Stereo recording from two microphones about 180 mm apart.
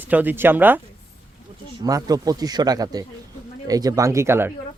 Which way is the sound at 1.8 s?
20° right (ahead or behind).